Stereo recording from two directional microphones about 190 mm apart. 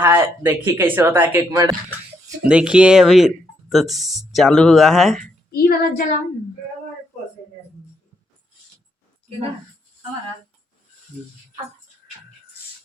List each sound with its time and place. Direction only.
0.0 s speech: 10° right (ahead or behind)
5.5 s a woman's voice: 50° left (ahead or behind)